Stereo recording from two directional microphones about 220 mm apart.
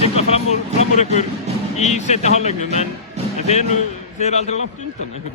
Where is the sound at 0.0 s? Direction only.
30° left (ahead or behind).